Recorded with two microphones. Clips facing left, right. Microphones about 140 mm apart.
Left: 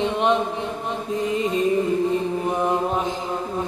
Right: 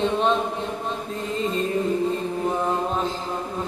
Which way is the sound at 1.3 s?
15° left (ahead or behind).